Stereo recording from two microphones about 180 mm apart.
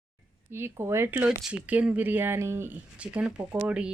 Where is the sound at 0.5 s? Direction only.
15° right (ahead or behind).